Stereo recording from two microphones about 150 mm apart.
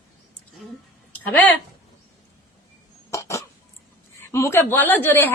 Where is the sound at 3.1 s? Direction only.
20° left (ahead or behind).